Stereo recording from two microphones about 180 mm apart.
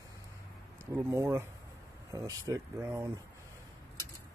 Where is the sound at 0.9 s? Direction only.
15° right (ahead or behind).